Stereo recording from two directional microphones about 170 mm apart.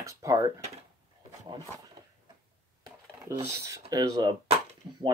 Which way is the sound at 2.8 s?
15° right (ahead or behind).